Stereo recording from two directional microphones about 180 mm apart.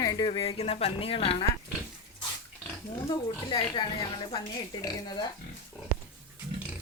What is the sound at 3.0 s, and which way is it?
Speech, 30° left (ahead or behind).